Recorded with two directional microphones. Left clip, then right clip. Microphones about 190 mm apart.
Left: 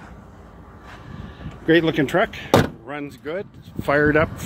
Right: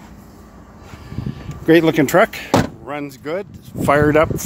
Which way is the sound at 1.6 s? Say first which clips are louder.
Right 5 dB; 30° right (ahead or behind).